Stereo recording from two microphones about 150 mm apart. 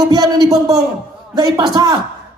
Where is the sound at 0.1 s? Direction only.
25° right (ahead or behind).